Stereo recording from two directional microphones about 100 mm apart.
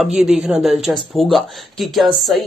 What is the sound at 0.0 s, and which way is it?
Speech, 5° right (ahead or behind).